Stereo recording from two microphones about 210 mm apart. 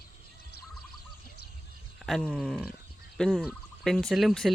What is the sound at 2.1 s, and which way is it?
Turkey, centre (ahead or behind).